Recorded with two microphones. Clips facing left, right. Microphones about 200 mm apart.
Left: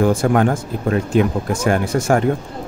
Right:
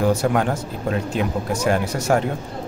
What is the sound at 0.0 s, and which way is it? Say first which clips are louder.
Speech: left 4 dB; 50° left (ahead or behind).